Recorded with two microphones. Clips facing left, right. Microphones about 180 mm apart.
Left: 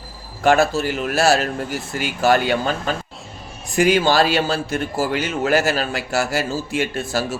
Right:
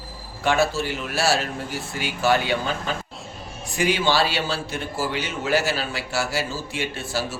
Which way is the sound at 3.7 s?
45° left (ahead or behind).